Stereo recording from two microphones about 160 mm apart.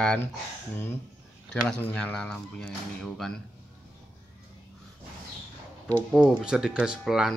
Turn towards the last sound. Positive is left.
turn(degrees=0)  # may be behind; listen again after turning